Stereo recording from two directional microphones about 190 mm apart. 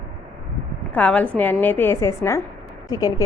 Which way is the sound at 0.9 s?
5° left (ahead or behind).